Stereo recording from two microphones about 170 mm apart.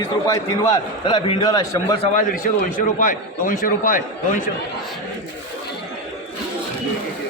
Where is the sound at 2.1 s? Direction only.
50° left (ahead or behind).